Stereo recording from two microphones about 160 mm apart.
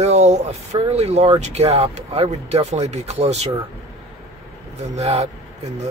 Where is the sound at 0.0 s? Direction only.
45° right (ahead or behind).